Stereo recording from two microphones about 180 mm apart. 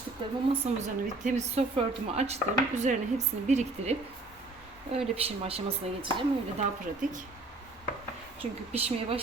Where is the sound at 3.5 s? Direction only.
40° right (ahead or behind).